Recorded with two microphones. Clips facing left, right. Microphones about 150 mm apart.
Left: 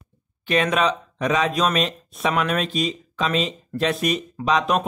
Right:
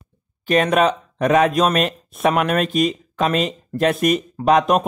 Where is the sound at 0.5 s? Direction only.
45° right (ahead or behind).